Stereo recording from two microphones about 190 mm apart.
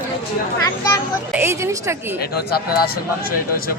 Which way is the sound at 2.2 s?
55° left (ahead or behind).